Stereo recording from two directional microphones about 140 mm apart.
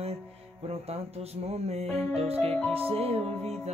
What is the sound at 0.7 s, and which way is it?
Music, 45° right (ahead or behind).